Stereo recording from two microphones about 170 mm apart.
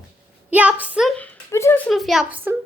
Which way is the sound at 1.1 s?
10° left (ahead or behind).